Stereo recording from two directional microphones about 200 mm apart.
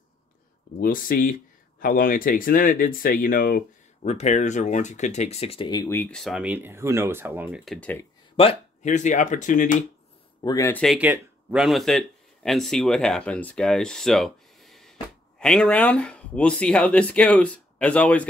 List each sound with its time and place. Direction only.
0.7 s speech: 45° left (ahead or behind); by 8.1 s 10° left (ahead or behind)
8.4 s speech: 30° left (ahead or behind)
10.4 s speech: 15° left (ahead or behind)
11.0 s speech: 5° right (ahead or behind)